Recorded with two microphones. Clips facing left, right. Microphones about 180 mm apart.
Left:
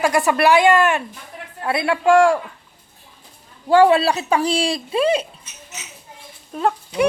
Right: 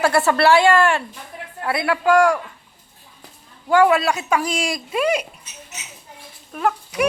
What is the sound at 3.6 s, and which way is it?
Speech, 30° left (ahead or behind).